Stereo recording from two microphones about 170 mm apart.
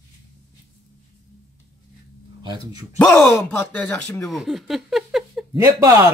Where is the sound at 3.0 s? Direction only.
Centre (ahead or behind).